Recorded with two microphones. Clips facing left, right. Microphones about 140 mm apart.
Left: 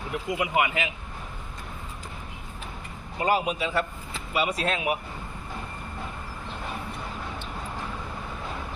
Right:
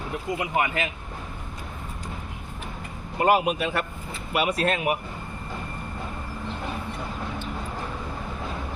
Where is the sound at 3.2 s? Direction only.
60° right (ahead or behind).